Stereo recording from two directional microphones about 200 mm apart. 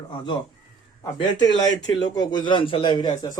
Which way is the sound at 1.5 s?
20° left (ahead or behind).